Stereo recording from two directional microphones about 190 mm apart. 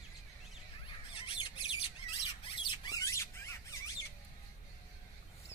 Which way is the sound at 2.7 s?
20° left (ahead or behind).